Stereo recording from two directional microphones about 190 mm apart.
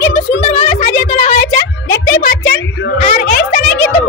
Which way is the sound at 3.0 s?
45° left (ahead or behind).